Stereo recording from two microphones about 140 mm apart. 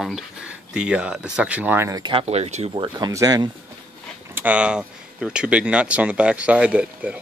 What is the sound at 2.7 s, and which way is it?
Speech, 35° right (ahead or behind).